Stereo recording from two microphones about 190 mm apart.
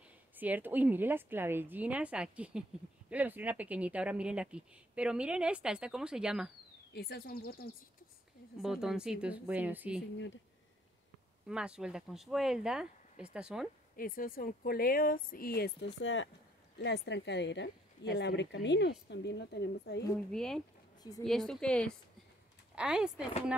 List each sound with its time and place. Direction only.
0.4 s a woman's voice: 10° right (ahead or behind)
6.9 s speech: 55° left (ahead or behind)
8.6 s speech: centre (ahead or behind)
11.4 s speech: 5° right (ahead or behind)
13.9 s speech: 50° left (ahead or behind); by 16.3 s 85° left
16.7 s a woman's voice: 65° left (ahead or behind)
20.2 s speech: 5° left (ahead or behind)